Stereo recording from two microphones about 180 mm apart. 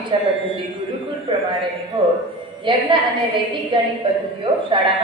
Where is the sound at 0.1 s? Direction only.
30° right (ahead or behind).